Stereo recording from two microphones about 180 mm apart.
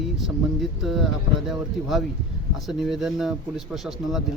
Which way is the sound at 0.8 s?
Centre (ahead or behind).